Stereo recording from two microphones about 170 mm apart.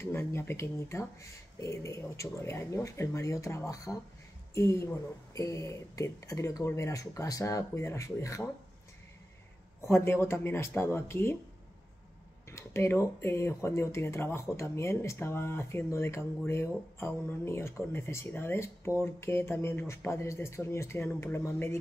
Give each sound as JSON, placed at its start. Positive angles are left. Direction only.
{"t": 0.0, "sound": "speech", "side_deg": 15}
{"t": 9.8, "sound": "speech", "side_deg": 15}
{"t": 12.4, "sound": "speech", "side_deg": 15}